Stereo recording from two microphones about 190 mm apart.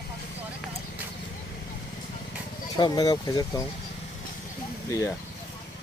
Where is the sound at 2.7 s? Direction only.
20° left (ahead or behind).